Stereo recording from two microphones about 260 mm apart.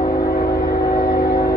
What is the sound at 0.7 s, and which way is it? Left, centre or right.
Music, left.